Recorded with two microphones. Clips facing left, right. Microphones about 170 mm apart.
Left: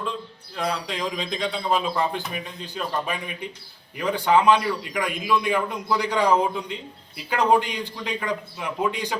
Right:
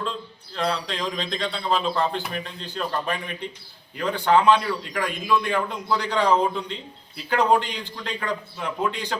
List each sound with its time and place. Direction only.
0.5 s a man's voice: 10° left (ahead or behind)